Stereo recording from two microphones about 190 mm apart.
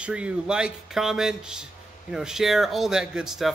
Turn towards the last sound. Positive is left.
turn(degrees=0)  # may be behind; listen again after turning